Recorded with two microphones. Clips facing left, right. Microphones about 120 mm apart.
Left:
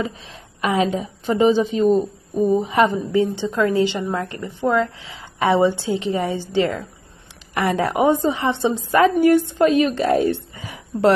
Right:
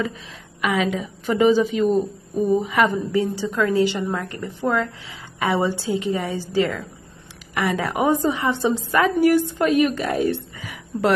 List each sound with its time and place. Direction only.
0.6 s a woman's voice: 30° left (ahead or behind)